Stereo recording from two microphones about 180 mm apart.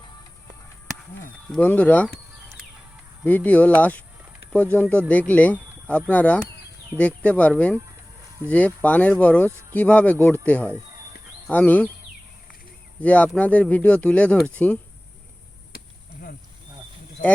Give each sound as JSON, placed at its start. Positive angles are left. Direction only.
{"t": 1.5, "sound": "speech", "side_deg": 5}
{"t": 3.2, "sound": "speech", "side_deg": 10}
{"t": 13.0, "sound": "speech", "side_deg": 10}